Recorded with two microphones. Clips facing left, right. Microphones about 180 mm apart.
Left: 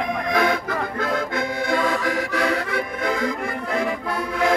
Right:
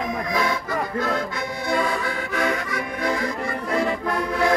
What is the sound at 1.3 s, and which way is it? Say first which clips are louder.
Accordion: left 2 dB; 90° left.